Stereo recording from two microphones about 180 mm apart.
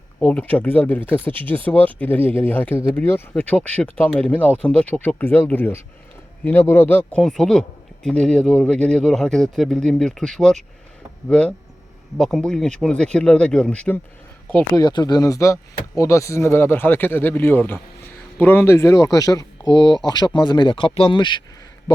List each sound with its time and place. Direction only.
0.2 s speech: 10° left (ahead or behind)
14.8 s speech: 25° left (ahead or behind)